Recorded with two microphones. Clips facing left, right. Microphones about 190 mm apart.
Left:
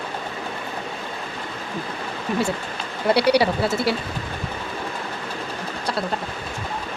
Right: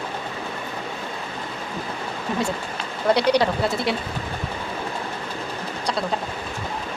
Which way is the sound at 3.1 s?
10° left (ahead or behind).